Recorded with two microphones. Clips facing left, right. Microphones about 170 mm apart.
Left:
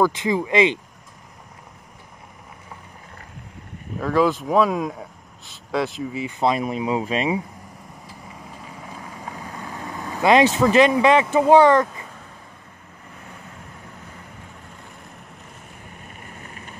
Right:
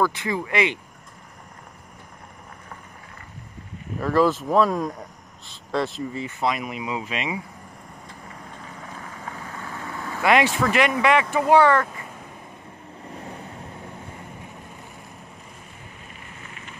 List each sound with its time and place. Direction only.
0.0 s speech: 20° left (ahead or behind)
4.0 s speech: centre (ahead or behind)
6.4 s speech: 30° left (ahead or behind)
8.1 s vehicle: 5° left (ahead or behind); by 11.2 s 25° left (ahead or behind)
11.3 s speech: 20° left (ahead or behind)
16.4 s vehicle: 40° left (ahead or behind)